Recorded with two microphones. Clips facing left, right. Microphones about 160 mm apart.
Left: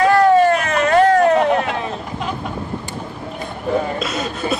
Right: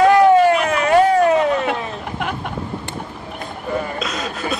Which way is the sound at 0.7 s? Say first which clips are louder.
Left 1 dB; 10° right (ahead or behind).